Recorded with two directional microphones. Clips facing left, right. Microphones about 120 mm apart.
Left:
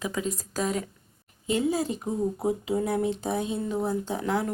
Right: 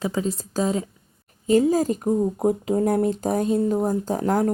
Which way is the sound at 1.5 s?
40° right (ahead or behind).